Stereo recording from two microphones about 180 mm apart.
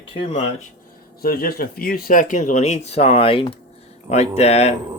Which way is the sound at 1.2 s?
55° left (ahead or behind).